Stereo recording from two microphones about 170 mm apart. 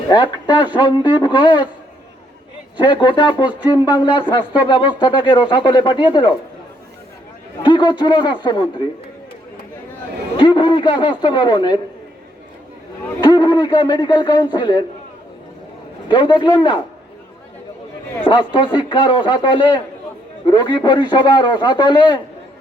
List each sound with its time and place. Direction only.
0.1 s speech: 25° left (ahead or behind)
2.7 s speech: 25° left (ahead or behind)
7.6 s speech: 30° left (ahead or behind)
10.3 s speech: 30° left (ahead or behind)
13.2 s speech: 25° left (ahead or behind)
16.0 s speech: 30° left (ahead or behind)
18.5 s speech: 30° left (ahead or behind)